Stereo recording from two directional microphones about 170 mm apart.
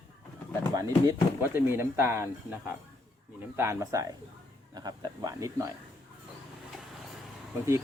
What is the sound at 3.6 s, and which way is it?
Speech, 15° right (ahead or behind).